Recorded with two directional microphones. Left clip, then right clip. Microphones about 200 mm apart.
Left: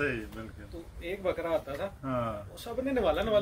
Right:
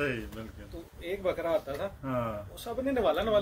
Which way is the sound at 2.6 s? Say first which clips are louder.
Right 1 dB; 20° left (ahead or behind).